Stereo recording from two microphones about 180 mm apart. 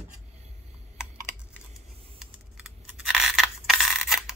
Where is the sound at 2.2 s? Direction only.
5° right (ahead or behind).